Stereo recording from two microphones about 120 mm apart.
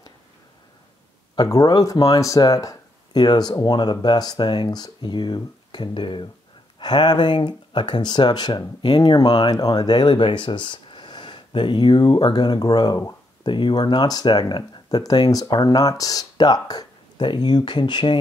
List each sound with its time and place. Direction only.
1.3 s speech: 35° left (ahead or behind)